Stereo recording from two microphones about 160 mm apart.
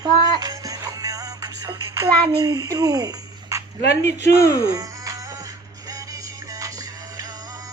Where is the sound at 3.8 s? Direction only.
90° left.